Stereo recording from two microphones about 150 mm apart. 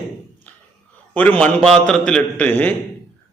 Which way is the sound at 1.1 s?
10° left (ahead or behind).